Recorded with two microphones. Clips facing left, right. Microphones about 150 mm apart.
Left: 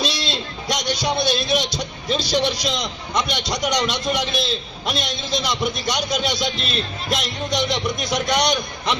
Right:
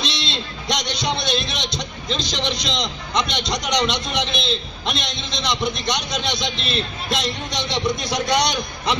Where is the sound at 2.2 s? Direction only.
25° right (ahead or behind).